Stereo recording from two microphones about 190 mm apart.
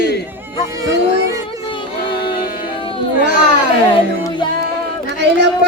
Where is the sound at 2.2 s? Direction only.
50° left (ahead or behind).